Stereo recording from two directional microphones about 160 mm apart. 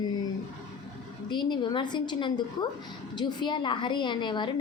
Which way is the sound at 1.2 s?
30° left (ahead or behind).